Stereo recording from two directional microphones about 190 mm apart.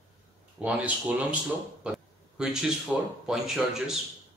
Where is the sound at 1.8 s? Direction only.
5° right (ahead or behind).